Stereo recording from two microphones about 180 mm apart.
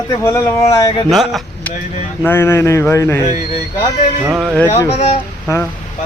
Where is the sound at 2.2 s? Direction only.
10° left (ahead or behind).